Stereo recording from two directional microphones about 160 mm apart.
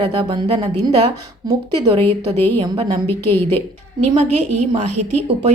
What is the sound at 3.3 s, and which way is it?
Speech, 15° left (ahead or behind).